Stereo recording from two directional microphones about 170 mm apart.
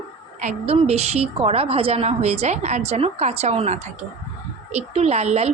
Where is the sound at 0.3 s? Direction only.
40° right (ahead or behind).